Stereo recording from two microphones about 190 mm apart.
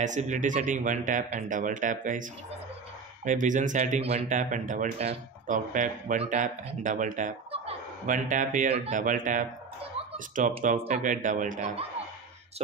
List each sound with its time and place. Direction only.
0.0 s speech: 40° right (ahead or behind)
3.3 s speech: 40° right (ahead or behind)
7.5 s a sound: 35° right (ahead or behind)
8.7 s speech: 35° right (ahead or behind)